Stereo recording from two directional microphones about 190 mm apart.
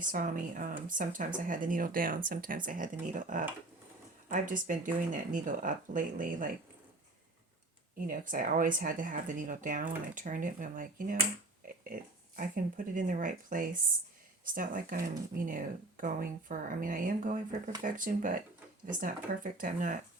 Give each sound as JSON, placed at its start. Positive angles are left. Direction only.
{"t": 0.1, "sound": "speech", "side_deg": -45}
{"t": 7.9, "sound": "speech", "side_deg": -45}
{"t": 12.4, "sound": "speech", "side_deg": -45}